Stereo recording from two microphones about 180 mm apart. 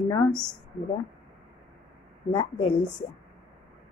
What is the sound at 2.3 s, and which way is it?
Speech, 30° left (ahead or behind).